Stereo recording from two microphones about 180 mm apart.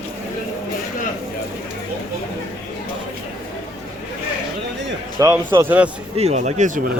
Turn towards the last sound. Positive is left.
turn(degrees=-45)  # may be behind; listen again after turning